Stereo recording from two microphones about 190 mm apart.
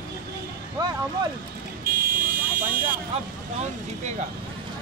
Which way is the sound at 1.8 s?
50° right (ahead or behind).